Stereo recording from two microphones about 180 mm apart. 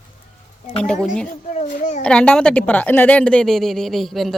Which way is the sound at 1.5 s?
45° left (ahead or behind).